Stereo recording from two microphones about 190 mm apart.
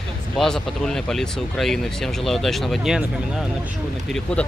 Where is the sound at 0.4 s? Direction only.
5° left (ahead or behind).